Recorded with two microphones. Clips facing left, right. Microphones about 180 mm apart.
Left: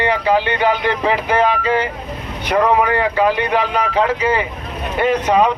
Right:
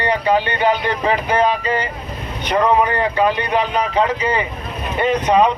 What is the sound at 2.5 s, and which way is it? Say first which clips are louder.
Speech: left 1 dB; 5° left (ahead or behind).